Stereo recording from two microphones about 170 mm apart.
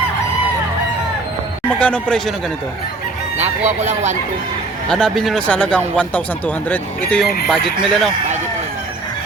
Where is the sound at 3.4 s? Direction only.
40° right (ahead or behind).